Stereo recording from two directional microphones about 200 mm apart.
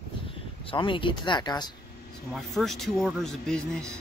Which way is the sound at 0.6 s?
25° left (ahead or behind).